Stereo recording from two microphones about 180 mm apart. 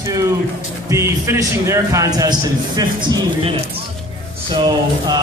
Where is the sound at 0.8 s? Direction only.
15° right (ahead or behind).